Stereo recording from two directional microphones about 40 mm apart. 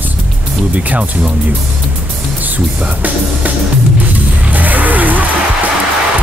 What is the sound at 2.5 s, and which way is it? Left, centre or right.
Speech, right.